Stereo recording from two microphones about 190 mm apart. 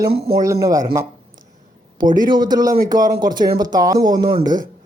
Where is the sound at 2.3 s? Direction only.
20° right (ahead or behind).